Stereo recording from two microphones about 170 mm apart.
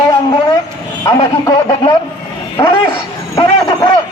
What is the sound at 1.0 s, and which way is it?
Speech, 20° left (ahead or behind).